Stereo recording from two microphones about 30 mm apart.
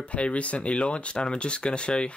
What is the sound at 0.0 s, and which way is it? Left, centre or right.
Speech, left.